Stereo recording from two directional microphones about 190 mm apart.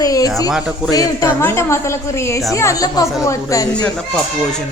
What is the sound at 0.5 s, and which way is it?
Speech, 5° right (ahead or behind).